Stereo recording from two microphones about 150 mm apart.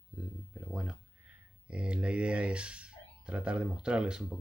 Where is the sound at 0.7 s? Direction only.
5° right (ahead or behind).